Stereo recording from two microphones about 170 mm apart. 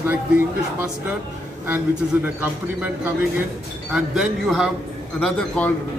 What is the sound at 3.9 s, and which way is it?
A man's voice, centre (ahead or behind).